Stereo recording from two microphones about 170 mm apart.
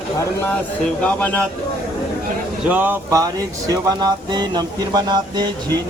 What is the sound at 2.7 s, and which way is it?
Speech, 10° right (ahead or behind).